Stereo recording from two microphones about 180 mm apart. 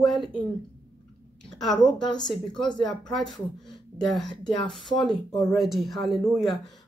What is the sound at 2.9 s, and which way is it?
Speech, centre (ahead or behind).